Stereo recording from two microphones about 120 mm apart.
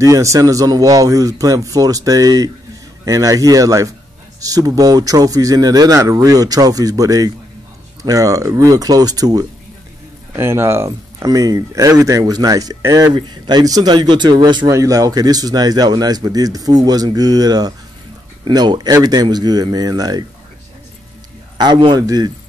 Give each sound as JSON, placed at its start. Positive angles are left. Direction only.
{"t": 0.0, "sound": "speech", "side_deg": -25}
{"t": 10.3, "sound": "speech", "side_deg": -20}
{"t": 14.7, "sound": "speech", "side_deg": -25}
{"t": 21.5, "sound": "speech", "side_deg": -40}